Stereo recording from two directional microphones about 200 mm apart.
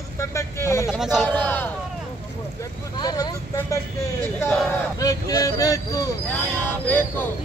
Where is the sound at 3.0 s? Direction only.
20° left (ahead or behind).